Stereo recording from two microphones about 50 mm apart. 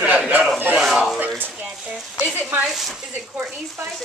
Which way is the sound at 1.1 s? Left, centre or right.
Right.